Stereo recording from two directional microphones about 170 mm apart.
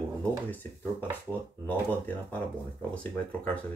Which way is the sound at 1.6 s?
10° left (ahead or behind).